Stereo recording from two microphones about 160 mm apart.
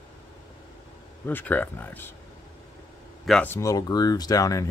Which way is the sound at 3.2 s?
5° left (ahead or behind).